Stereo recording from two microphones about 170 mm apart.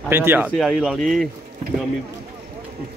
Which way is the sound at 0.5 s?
Centre (ahead or behind).